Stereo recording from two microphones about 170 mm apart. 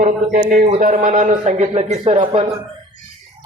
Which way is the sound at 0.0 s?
50° right (ahead or behind).